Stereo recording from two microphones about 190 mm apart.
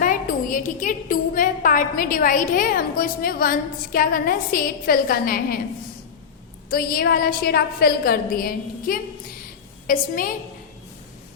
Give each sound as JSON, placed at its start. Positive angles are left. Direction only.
{"t": 0.0, "sound": "a woman's voice", "side_deg": 45}
{"t": 6.7, "sound": "a woman's voice", "side_deg": 50}